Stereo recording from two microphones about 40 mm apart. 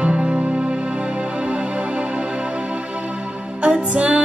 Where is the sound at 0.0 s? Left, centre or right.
Right.